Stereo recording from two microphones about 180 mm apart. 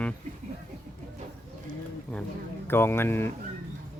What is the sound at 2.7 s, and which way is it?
Speech, 10° left (ahead or behind).